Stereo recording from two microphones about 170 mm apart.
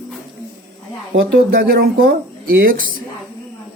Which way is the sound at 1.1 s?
70° right (ahead or behind).